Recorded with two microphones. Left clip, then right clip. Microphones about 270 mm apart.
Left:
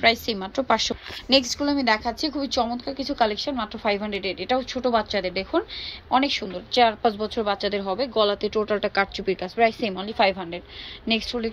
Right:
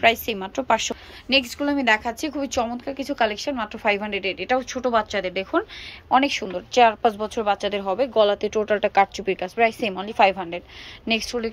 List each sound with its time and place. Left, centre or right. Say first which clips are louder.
0.0 s a woman's voice: right 1 dB; centre